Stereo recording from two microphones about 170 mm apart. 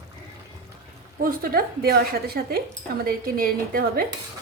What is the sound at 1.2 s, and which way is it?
Speech, 60° right (ahead or behind).